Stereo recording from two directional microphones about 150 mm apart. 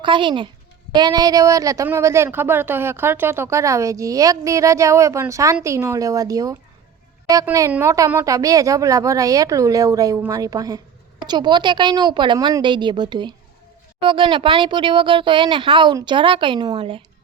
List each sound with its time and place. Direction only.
0.0 s speech: 35° right (ahead or behind)
7.7 s speech: 20° right (ahead or behind); by 17.0 s 35° right (ahead or behind)